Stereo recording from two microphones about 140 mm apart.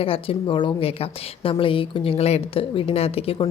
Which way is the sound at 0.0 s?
40° left (ahead or behind).